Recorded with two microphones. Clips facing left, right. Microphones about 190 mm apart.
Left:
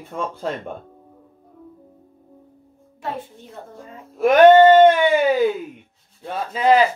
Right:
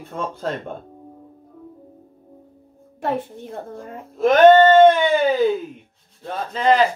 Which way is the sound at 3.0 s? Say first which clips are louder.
Right 6 dB; 55° right (ahead or behind).